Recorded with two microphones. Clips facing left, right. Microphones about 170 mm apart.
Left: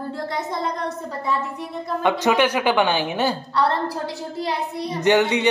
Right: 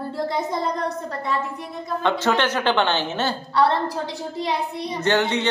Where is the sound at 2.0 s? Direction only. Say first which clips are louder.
Left 2 dB; 15° left (ahead or behind).